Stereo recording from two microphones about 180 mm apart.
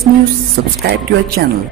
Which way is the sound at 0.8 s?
55° right (ahead or behind).